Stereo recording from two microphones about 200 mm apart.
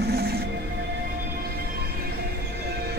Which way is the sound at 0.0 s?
50° right (ahead or behind).